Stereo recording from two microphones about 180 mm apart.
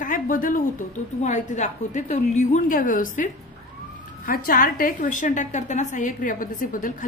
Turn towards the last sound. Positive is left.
turn(degrees=50)  # may be behind; listen again after turning